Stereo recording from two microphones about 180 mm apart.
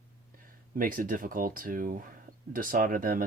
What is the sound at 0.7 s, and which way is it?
Speech, 50° right (ahead or behind).